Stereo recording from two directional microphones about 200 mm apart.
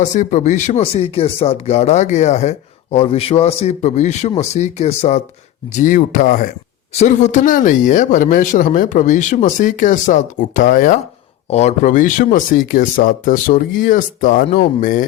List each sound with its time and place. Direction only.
0.0 s speech: 40° left (ahead or behind)